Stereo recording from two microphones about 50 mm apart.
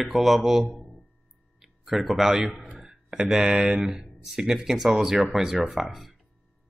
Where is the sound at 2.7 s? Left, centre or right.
Centre.